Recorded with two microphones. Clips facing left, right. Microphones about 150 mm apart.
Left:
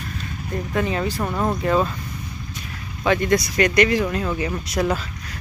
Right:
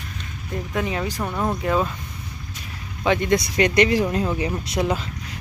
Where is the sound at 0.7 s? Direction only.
10° right (ahead or behind).